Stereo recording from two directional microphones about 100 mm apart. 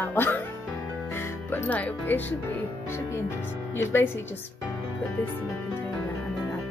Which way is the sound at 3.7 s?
25° left (ahead or behind).